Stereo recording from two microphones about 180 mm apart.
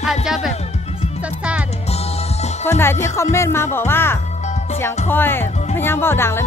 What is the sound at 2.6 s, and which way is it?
Speech, 15° left (ahead or behind).